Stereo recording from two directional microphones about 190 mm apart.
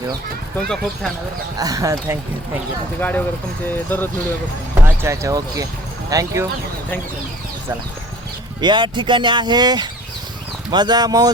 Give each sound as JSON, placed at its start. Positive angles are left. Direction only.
{"t": 1.5, "sound": "speech", "side_deg": -20}
{"t": 3.0, "sound": "speech", "side_deg": 10}
{"t": 5.0, "sound": "speech", "side_deg": -15}
{"t": 8.6, "sound": "speech", "side_deg": -25}